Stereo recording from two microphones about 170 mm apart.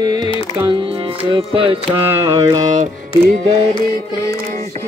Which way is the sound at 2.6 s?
45° right (ahead or behind).